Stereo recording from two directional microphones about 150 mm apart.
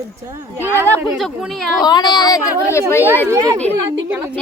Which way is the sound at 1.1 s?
Centre (ahead or behind).